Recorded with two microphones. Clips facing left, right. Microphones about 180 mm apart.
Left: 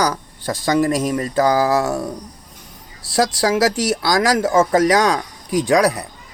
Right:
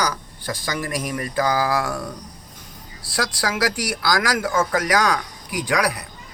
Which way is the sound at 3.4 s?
25° left (ahead or behind).